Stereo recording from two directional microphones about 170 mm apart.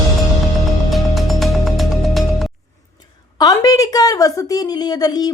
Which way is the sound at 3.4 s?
20° left (ahead or behind).